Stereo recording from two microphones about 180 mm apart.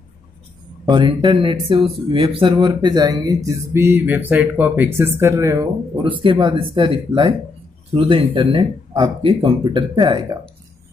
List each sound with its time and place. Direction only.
0.9 s speech: 25° right (ahead or behind)